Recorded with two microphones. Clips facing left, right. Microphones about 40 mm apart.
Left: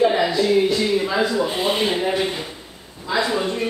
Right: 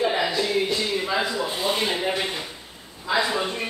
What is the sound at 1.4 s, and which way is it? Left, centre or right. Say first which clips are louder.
Speech: left 4 dB; centre.